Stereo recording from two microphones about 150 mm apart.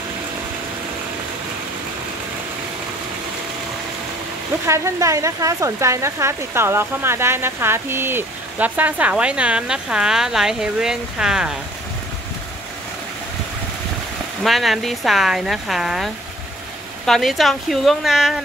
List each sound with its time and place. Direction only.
4.6 s speech: 20° right (ahead or behind)
14.4 s speech: centre (ahead or behind)